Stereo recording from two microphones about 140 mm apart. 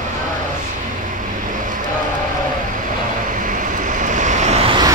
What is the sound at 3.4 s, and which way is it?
Vehicle, 70° right (ahead or behind).